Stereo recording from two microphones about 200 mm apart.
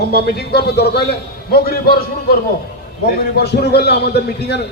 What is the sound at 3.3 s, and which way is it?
A man's voice, 55° left (ahead or behind).